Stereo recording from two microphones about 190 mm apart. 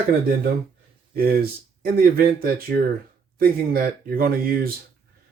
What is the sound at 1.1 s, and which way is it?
Speech, 50° right (ahead or behind).